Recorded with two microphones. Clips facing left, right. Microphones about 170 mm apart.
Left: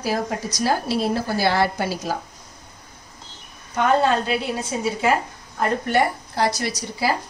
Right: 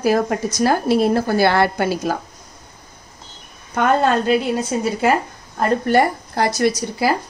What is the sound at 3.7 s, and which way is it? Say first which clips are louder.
Speech: right 2 dB; 55° right (ahead or behind).